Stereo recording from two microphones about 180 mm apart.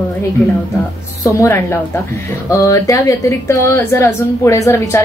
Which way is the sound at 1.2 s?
15° left (ahead or behind).